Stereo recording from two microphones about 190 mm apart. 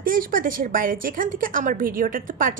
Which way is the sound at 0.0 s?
45° right (ahead or behind).